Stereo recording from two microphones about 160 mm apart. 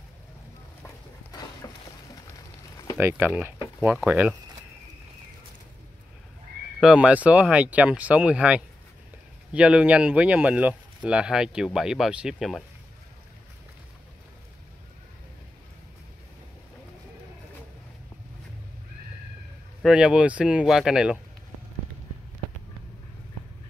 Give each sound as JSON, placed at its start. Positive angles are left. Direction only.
{"t": 0.8, "sound": "a sound", "side_deg": 25}
{"t": 3.0, "sound": "speech", "side_deg": -15}
{"t": 3.3, "sound": "speech", "side_deg": -5}
{"t": 6.8, "sound": "speech", "side_deg": -5}
{"t": 19.8, "sound": "speech", "side_deg": -5}